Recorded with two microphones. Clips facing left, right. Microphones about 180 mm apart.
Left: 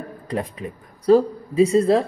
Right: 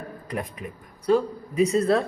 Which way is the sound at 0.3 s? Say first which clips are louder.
Left 5 dB; 30° left (ahead or behind).